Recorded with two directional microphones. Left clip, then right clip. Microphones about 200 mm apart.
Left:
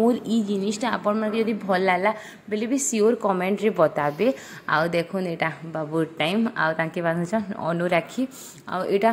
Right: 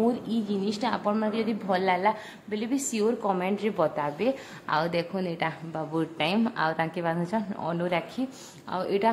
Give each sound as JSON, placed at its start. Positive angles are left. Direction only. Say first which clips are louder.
{"t": 0.1, "sound": "a woman's voice", "louder": "left 5 dB", "side_deg": 20}